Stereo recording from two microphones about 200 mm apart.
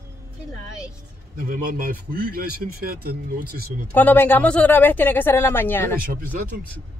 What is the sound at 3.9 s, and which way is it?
Speech, 10° left (ahead or behind).